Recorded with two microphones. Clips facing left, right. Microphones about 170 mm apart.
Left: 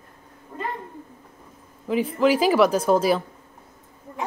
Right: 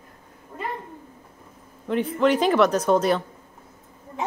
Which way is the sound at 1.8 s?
5° left (ahead or behind).